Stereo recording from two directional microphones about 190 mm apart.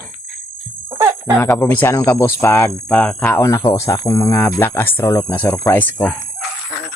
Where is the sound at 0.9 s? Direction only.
20° right (ahead or behind).